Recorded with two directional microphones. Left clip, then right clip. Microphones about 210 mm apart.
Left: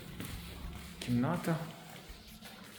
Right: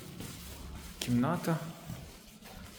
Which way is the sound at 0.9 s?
20° right (ahead or behind).